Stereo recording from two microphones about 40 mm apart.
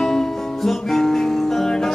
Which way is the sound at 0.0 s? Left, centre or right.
Centre.